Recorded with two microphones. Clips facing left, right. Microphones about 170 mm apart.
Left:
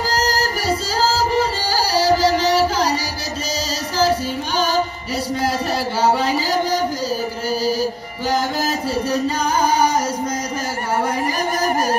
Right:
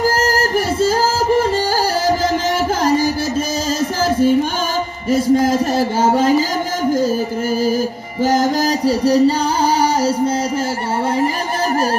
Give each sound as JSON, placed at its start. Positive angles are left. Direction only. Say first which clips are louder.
{"t": 0.2, "sound": "music", "louder": "right 4 dB", "side_deg": -50}
{"t": 4.0, "sound": "music", "louder": "right 4 dB", "side_deg": -50}
{"t": 5.1, "sound": "speech", "louder": "right 8 dB", "side_deg": -45}
{"t": 8.8, "sound": "music", "louder": "right 9 dB", "side_deg": -35}